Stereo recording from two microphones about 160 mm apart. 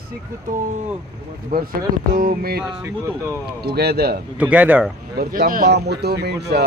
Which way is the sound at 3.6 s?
80° right.